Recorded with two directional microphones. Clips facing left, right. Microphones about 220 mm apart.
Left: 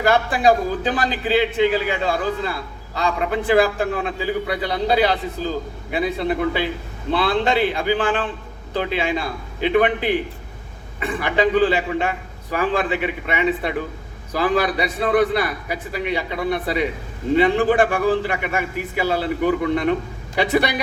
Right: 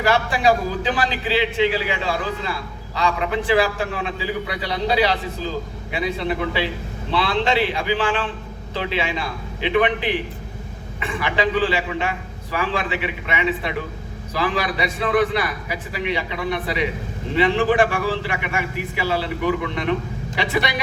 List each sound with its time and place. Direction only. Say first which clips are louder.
0.0 s a man's voice: left 2 dB; 45° left (ahead or behind)